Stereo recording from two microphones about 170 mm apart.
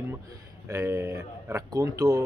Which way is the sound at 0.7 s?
15° right (ahead or behind).